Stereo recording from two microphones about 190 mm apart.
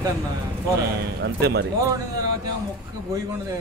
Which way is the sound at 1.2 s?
60° right (ahead or behind).